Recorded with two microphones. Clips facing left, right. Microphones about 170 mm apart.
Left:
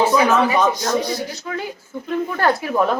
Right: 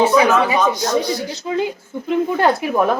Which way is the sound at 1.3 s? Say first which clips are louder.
Right 6 dB; 20° right (ahead or behind).